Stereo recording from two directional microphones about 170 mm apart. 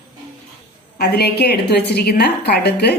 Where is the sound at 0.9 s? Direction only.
70° left (ahead or behind).